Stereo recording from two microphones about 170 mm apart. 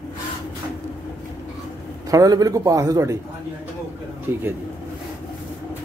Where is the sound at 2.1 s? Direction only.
20° right (ahead or behind).